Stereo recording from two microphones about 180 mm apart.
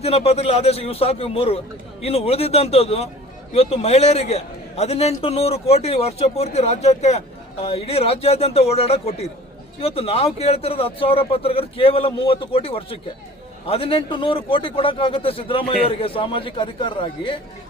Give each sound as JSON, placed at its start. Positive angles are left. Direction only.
{"t": 0.0, "sound": "a man's voice", "side_deg": 35}